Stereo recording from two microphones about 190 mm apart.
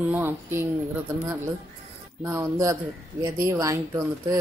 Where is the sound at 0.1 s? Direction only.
10° right (ahead or behind).